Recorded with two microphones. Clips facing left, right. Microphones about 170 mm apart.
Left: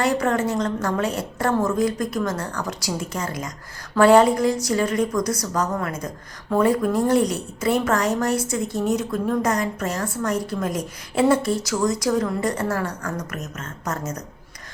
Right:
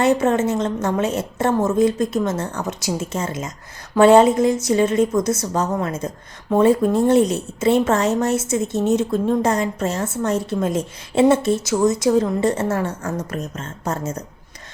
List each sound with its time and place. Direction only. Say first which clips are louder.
0.0 s a woman's voice: right 4 dB; 20° right (ahead or behind)